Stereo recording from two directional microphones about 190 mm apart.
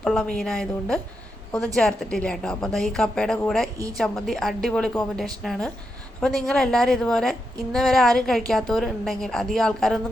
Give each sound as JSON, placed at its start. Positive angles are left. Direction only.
{"t": 0.0, "sound": "a woman's voice", "side_deg": 5}